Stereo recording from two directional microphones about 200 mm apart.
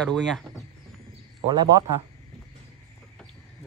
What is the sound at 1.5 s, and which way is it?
Speech, 20° right (ahead or behind).